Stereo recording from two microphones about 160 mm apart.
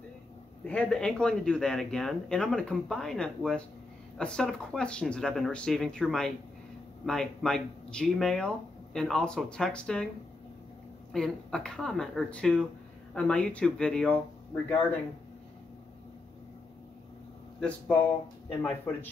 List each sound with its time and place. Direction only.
0.7 s speech: 5° left (ahead or behind)
11.1 s speech: 5° left (ahead or behind)
17.6 s speech: 10° left (ahead or behind)